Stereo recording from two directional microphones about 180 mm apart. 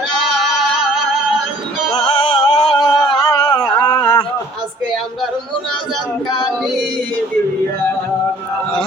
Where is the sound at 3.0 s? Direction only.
25° left (ahead or behind).